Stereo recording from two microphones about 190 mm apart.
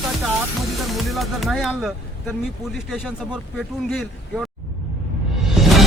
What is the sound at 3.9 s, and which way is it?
Speech, centre (ahead or behind).